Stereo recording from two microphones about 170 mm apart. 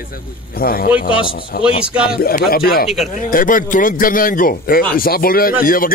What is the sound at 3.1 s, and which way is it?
Speech, 50° left (ahead or behind).